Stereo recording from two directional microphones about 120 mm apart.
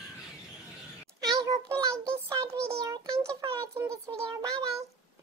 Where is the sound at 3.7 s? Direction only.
25° right (ahead or behind).